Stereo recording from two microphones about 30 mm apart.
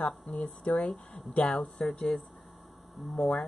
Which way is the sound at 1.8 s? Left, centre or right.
Left.